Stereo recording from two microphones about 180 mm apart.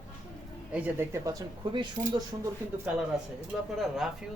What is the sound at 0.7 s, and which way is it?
Speech, 10° right (ahead or behind).